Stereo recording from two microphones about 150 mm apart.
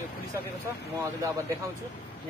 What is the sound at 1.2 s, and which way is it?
Speech, 20° right (ahead or behind).